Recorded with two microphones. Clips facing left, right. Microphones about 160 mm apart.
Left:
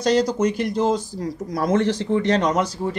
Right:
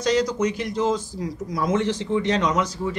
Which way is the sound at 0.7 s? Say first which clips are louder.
Left 1 dB; 35° left (ahead or behind).